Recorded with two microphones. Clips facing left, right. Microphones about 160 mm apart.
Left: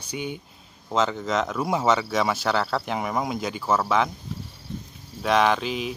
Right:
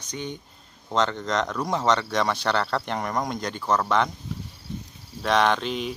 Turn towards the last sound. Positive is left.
turn(degrees=5)  # may be behind; listen again after turning